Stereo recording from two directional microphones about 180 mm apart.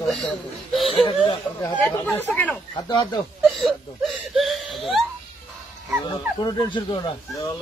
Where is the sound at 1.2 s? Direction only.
30° left (ahead or behind).